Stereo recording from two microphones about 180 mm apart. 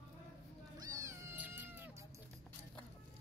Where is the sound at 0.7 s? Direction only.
15° right (ahead or behind).